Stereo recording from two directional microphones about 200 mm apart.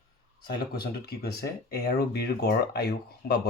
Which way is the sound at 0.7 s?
50° left (ahead or behind).